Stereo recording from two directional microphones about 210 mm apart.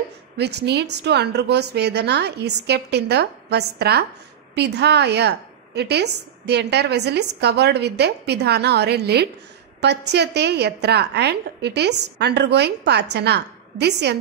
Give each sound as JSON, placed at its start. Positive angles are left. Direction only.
{"t": 0.4, "sound": "a woman's voice", "side_deg": -50}